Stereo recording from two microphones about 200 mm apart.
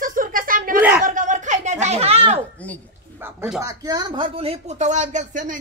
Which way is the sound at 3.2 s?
Centre (ahead or behind).